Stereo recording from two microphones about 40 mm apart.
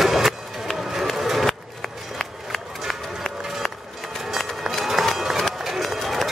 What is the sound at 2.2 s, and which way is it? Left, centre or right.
Run, centre.